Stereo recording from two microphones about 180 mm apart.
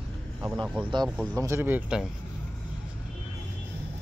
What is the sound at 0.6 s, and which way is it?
Speech, 5° right (ahead or behind).